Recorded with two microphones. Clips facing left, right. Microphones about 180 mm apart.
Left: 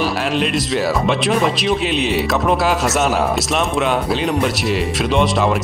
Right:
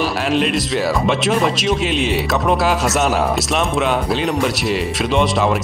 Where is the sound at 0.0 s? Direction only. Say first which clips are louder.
Right 1 dB; centre (ahead or behind).